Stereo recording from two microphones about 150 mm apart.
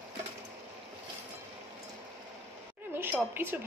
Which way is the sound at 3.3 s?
15° right (ahead or behind).